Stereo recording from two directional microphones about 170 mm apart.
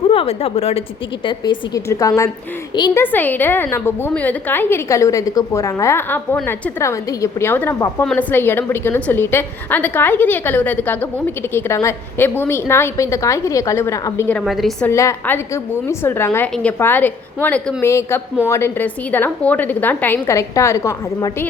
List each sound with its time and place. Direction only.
0.1 s a woman's voice: 35° left (ahead or behind)
3.0 s a woman's voice: 10° left (ahead or behind)
14.4 s a woman's voice: centre (ahead or behind)
14.8 s a woman's voice: 15° left (ahead or behind)